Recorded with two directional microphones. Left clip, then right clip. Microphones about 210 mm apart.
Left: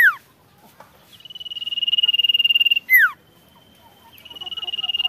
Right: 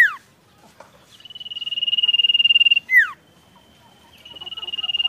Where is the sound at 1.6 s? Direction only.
30° left (ahead or behind).